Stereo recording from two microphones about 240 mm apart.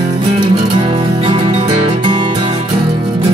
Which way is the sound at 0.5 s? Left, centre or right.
Right.